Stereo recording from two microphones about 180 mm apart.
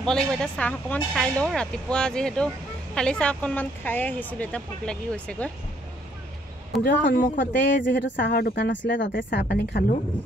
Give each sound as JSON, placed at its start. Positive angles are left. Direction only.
{"t": 0.0, "sound": "speech", "side_deg": 5}
{"t": 6.7, "sound": "speech", "side_deg": 0}
{"t": 7.3, "sound": "speech", "side_deg": 75}
{"t": 8.3, "sound": "a woman's voice", "side_deg": 50}